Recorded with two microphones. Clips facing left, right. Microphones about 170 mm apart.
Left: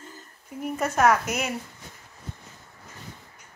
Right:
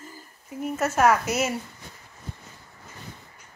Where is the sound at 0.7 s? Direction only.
5° right (ahead or behind).